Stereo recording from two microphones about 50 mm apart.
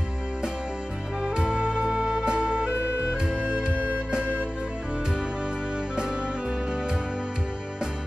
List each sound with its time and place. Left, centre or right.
1.2 s music: centre